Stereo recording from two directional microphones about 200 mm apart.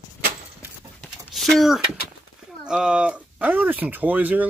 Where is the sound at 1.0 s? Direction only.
Centre (ahead or behind).